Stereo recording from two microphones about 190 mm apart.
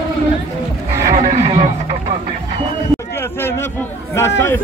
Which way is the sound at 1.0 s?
40° right (ahead or behind).